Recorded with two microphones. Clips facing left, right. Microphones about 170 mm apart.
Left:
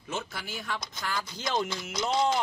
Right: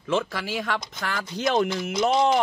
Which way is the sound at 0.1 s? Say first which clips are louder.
Right 10 dB; 90° right.